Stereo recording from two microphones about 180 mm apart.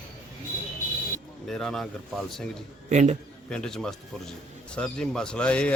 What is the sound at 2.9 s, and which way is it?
Speech, 40° right (ahead or behind).